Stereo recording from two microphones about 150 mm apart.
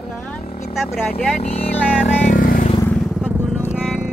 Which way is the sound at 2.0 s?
55° left (ahead or behind).